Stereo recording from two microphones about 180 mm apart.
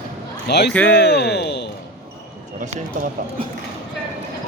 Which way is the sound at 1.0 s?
65° left (ahead or behind).